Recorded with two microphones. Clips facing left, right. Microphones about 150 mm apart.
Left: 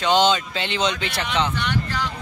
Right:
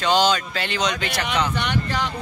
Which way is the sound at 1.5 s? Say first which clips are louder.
Right 1 dB; 20° right (ahead or behind).